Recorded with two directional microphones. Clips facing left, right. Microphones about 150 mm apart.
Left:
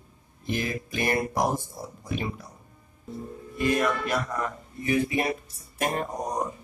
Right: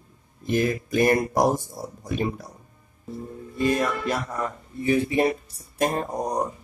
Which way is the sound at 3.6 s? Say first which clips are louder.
Right 1 dB; 30° right (ahead or behind).